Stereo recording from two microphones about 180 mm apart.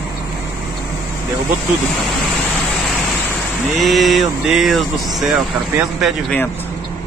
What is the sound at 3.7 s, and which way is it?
Speech, centre (ahead or behind).